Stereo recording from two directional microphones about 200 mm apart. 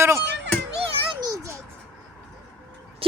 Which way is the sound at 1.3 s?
15° right (ahead or behind).